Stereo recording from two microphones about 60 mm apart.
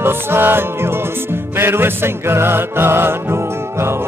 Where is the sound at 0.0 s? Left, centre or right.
Right.